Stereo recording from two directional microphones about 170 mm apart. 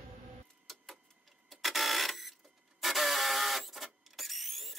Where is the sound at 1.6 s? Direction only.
Centre (ahead or behind).